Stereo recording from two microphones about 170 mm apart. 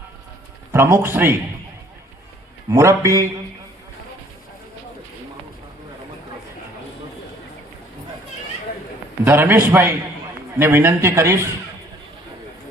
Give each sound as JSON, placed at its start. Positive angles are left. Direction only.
{"t": 0.7, "sound": "a man's voice", "side_deg": -15}
{"t": 2.6, "sound": "a man's voice", "side_deg": -15}
{"t": 9.2, "sound": "a man's voice", "side_deg": -15}